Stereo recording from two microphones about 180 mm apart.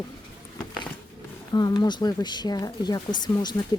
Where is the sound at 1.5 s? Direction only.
25° left (ahead or behind).